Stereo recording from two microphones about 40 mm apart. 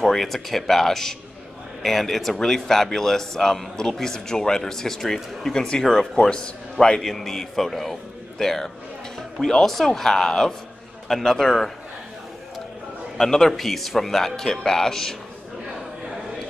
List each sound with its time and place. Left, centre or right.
0.0 s a man's voice: centre
7.0 s a man's voice: centre
13.2 s a man's voice: centre